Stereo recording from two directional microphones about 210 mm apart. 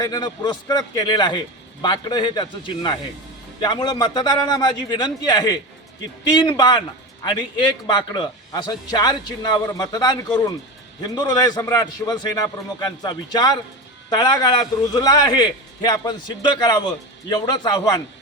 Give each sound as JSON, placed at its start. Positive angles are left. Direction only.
{"t": 0.0, "sound": "a man's voice", "side_deg": 20}
{"t": 7.9, "sound": "a man's voice", "side_deg": 20}